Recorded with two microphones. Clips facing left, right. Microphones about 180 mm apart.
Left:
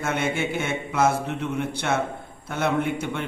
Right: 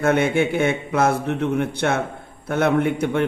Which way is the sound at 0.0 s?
55° right (ahead or behind).